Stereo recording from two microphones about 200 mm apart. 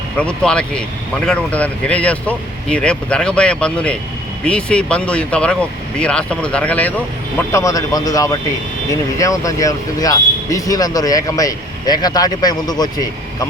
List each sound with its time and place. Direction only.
0.2 s speech: 5° left (ahead or behind)